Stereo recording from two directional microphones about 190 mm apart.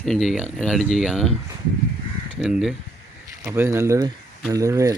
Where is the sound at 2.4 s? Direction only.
Centre (ahead or behind).